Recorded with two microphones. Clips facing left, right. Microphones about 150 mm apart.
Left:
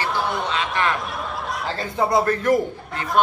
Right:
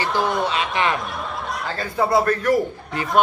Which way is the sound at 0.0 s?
Centre (ahead or behind).